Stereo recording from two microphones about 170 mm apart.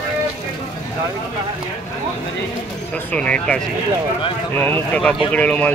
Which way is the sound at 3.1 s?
5° left (ahead or behind).